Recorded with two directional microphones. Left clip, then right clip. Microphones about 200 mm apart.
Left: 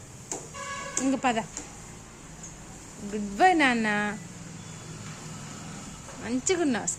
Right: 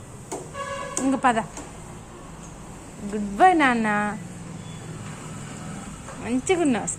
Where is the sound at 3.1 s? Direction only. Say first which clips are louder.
Right 4 dB; 20° left (ahead or behind).